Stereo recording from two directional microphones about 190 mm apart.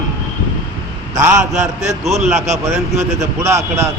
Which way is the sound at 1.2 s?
40° right (ahead or behind).